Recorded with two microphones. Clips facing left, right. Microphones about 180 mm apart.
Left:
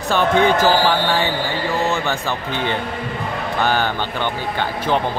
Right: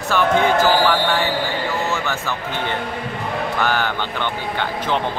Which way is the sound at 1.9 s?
15° left (ahead or behind).